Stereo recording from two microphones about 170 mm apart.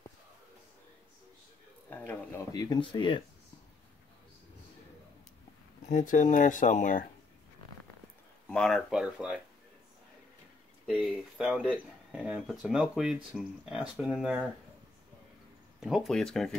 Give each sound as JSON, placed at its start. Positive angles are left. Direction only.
{"t": 1.9, "sound": "speech", "side_deg": 10}
{"t": 2.5, "sound": "speech", "side_deg": 25}
{"t": 5.9, "sound": "speech", "side_deg": 45}
{"t": 8.5, "sound": "speech", "side_deg": 5}
{"t": 10.9, "sound": "speech", "side_deg": -5}
{"t": 15.8, "sound": "speech", "side_deg": 0}